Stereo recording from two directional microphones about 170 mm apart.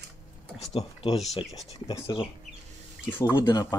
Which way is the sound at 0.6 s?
35° left (ahead or behind).